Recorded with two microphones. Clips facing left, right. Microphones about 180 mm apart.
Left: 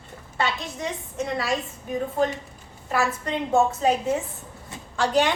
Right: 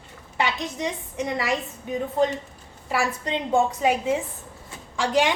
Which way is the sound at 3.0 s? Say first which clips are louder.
Left 1 dB; 15° right (ahead or behind).